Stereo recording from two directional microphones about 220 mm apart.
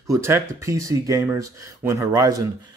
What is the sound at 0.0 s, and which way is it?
Speech, 15° right (ahead or behind).